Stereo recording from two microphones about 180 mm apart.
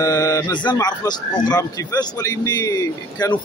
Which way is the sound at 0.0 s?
20° left (ahead or behind).